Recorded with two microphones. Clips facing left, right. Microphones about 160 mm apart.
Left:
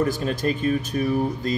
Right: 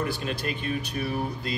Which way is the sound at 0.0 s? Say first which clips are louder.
Left 7 dB; 40° left (ahead or behind).